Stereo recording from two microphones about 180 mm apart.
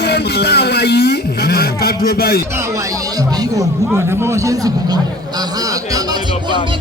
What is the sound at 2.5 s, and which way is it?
Speech, 20° right (ahead or behind).